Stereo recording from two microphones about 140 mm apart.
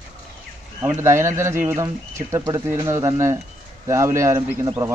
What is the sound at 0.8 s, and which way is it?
Speech, 20° right (ahead or behind).